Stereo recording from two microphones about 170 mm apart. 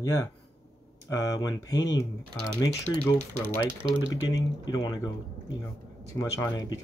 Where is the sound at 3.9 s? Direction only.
35° right (ahead or behind).